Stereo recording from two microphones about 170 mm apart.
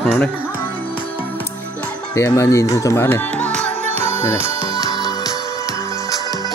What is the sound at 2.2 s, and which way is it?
Speech, 20° left (ahead or behind).